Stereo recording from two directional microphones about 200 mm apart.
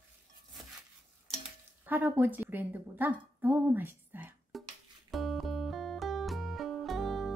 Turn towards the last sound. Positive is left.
turn(degrees=0)  # may be behind; listen again after turning